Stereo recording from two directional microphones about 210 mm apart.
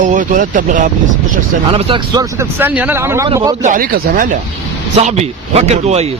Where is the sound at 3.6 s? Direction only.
40° right (ahead or behind).